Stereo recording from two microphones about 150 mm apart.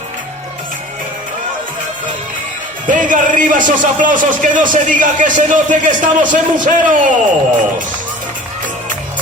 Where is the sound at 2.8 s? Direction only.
60° right (ahead or behind).